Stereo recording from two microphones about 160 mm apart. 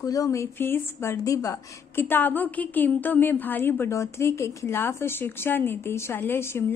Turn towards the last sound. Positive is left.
turn(degrees=15)  # may be behind; listen again after turning